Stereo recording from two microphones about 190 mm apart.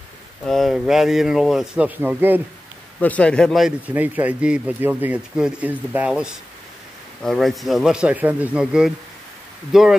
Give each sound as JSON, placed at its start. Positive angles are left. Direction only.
{"t": 0.5, "sound": "speech", "side_deg": 0}
{"t": 3.0, "sound": "speech", "side_deg": 5}